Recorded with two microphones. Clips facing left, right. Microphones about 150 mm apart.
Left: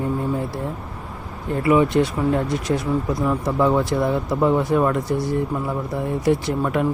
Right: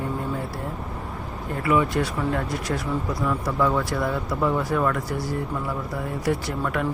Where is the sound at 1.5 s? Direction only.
20° left (ahead or behind).